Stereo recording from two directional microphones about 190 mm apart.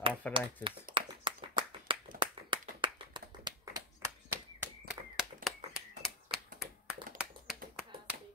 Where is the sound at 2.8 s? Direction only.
25° right (ahead or behind).